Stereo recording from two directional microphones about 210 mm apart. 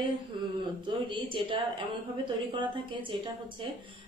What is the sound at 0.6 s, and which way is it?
A woman's voice, 25° right (ahead or behind).